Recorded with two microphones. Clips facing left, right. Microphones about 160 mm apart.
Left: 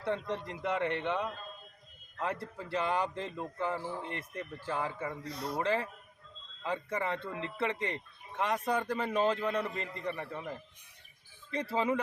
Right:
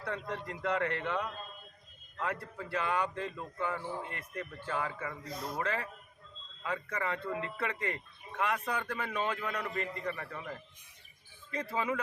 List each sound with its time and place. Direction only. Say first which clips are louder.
0.0 s speech: left 4 dB; 25° left (ahead or behind)
5.3 s speech: left 2 dB; 70° left (ahead or behind)
5.5 s speech: left 5 dB; 25° left (ahead or behind)
11.5 s speech: left 3 dB; 30° left (ahead or behind)